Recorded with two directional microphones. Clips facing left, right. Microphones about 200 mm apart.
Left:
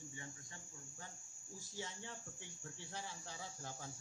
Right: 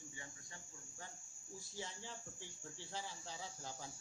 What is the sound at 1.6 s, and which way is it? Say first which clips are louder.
Speech: left 1 dB; 75° left (ahead or behind).